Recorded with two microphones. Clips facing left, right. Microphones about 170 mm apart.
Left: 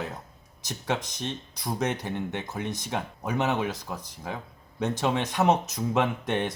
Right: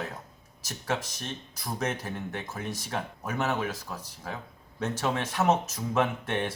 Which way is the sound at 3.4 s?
10° left (ahead or behind).